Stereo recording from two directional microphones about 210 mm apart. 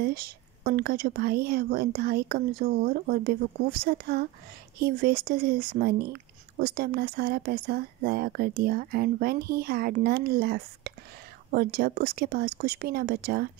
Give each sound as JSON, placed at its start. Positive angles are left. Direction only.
{"t": 0.0, "sound": "speech", "side_deg": -45}